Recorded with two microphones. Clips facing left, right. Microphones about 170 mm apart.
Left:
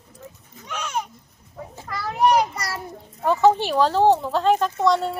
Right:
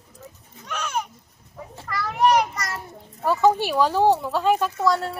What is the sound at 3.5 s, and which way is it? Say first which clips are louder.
Speech: left 1 dB; 10° right (ahead or behind).